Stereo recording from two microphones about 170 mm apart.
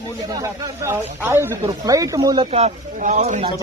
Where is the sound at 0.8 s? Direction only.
15° right (ahead or behind).